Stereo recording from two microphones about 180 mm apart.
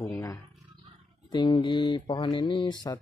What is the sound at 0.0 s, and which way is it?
Speech, 20° left (ahead or behind).